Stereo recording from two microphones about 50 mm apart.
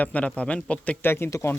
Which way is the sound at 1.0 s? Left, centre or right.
Left.